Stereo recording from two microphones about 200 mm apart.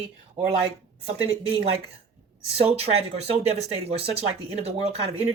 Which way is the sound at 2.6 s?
30° right (ahead or behind).